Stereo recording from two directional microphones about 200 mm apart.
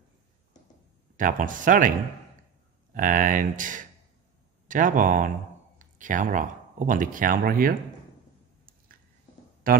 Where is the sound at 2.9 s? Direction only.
40° right (ahead or behind).